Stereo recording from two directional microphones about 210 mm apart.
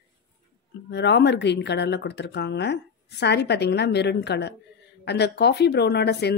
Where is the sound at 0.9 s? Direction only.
55° left (ahead or behind).